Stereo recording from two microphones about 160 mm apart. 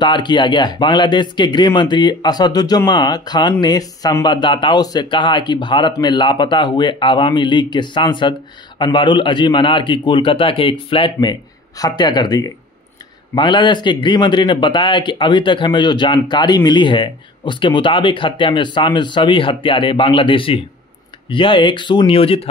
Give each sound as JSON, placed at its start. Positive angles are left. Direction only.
{"t": 0.0, "sound": "speech", "side_deg": 30}